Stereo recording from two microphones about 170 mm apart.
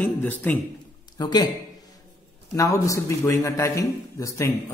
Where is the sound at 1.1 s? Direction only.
25° left (ahead or behind).